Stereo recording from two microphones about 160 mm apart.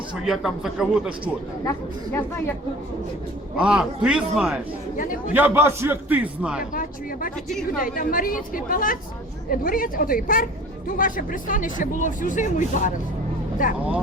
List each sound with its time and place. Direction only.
0.3 s a man's voice: centre (ahead or behind)
3.6 s a man's voice: 5° right (ahead or behind)
6.7 s speech: 60° left (ahead or behind)